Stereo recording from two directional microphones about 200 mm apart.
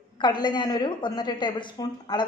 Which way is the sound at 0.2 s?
20° left (ahead or behind).